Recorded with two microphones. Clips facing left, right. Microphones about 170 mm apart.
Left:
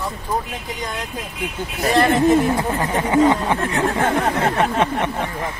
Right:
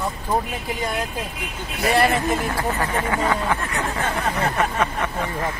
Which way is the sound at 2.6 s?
20° left (ahead or behind).